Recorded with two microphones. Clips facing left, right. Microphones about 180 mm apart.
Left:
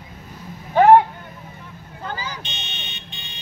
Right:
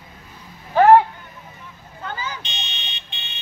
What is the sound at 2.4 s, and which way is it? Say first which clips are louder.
Vehicle: even; 50° left (ahead or behind).